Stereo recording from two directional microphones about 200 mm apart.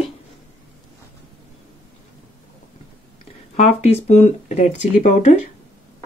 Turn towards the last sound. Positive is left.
turn(degrees=35)  # may be behind; listen again after turning